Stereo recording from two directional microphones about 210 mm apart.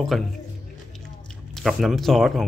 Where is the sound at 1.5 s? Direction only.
Centre (ahead or behind).